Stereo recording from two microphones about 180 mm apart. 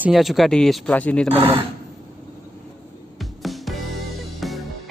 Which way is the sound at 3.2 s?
Centre (ahead or behind).